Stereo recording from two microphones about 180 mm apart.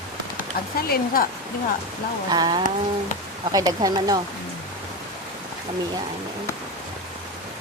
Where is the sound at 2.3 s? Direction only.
25° right (ahead or behind).